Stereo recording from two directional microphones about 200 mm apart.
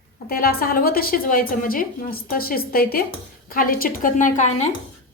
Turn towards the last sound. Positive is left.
turn(degrees=40)  # may be behind; listen again after turning